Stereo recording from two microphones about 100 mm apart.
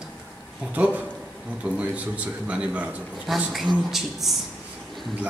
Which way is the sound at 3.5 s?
Centre (ahead or behind).